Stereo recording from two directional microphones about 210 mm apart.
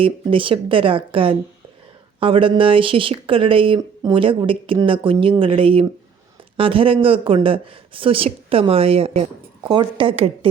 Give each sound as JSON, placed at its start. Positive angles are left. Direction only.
{"t": 0.0, "sound": "speech", "side_deg": -25}